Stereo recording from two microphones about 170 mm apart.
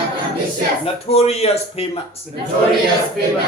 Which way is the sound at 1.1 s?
35° left (ahead or behind).